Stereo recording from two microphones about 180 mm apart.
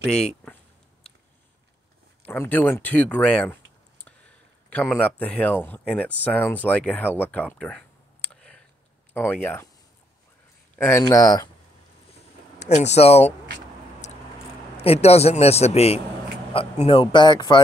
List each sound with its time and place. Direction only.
2.2 s speech: 10° left (ahead or behind)
10.8 s speech: 15° left (ahead or behind)
12.5 s speech: 40° left (ahead or behind)
14.8 s a man's voice: 35° left (ahead or behind)